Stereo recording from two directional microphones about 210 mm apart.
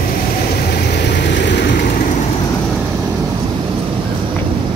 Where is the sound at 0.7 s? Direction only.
50° left (ahead or behind).